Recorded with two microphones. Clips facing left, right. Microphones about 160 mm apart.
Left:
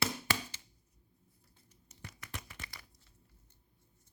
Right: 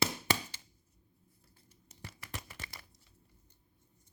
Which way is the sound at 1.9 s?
30° right (ahead or behind).